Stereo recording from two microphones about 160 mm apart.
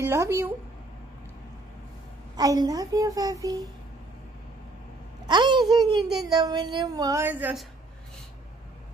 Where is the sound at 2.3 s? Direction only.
25° right (ahead or behind).